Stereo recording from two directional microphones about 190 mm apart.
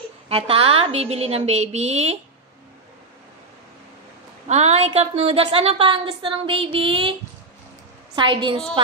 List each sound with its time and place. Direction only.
0.3 s a woman's voice: 30° right (ahead or behind)
4.5 s a woman's voice: 35° right (ahead or behind)
8.2 s a woman's voice: 25° right (ahead or behind)